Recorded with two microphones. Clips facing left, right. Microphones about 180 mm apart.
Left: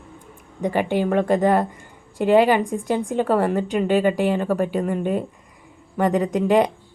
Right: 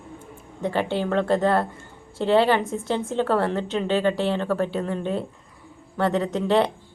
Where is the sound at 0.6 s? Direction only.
15° left (ahead or behind).